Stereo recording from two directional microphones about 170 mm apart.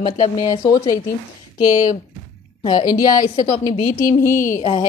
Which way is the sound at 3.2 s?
50° left (ahead or behind).